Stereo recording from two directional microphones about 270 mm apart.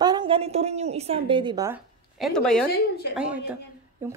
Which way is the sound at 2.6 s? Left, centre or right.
Left.